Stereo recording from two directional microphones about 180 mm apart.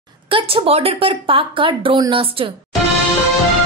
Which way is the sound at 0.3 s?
30° right (ahead or behind).